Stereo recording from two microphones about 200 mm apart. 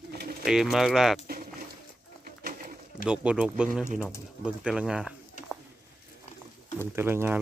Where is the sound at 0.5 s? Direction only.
Centre (ahead or behind).